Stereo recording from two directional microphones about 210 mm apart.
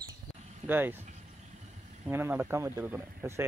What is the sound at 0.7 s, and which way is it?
Speech, 10° right (ahead or behind).